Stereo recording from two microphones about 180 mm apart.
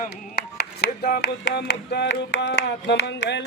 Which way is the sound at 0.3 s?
60° left (ahead or behind).